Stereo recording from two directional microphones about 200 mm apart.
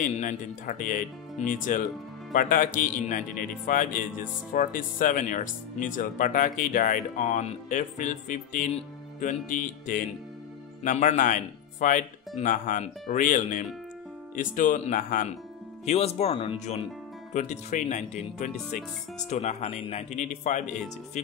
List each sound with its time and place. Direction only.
0.0 s speech: 40° left (ahead or behind)
15.8 s speech: 35° left (ahead or behind)